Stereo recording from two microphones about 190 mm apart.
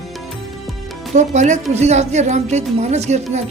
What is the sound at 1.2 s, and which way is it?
Speech, 40° right (ahead or behind).